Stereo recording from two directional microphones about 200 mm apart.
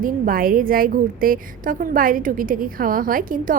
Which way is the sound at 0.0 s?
45° right (ahead or behind).